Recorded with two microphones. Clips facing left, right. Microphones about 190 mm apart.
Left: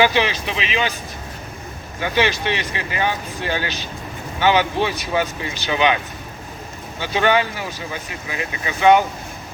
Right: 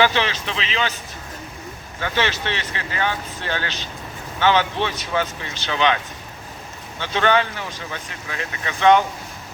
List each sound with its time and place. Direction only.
0.0 s speech: 10° left (ahead or behind)
2.0 s speech: 15° left (ahead or behind)
7.0 s speech: 10° left (ahead or behind)